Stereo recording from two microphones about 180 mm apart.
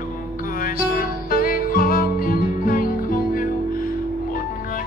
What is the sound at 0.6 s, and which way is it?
Music, 50° left (ahead or behind).